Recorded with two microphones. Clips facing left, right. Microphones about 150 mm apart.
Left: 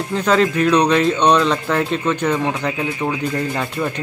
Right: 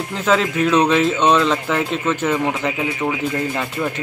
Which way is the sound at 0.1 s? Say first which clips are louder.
Left 2 dB; centre (ahead or behind).